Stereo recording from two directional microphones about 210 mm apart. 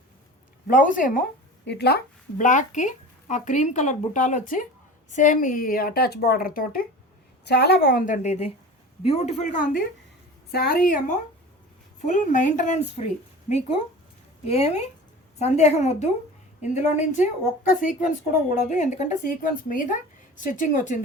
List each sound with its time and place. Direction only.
0.7 s speech: 40° left (ahead or behind)
1.6 s speech: 50° left (ahead or behind)
2.4 s speech: 35° left (ahead or behind)
14.4 s speech: 30° left (ahead or behind)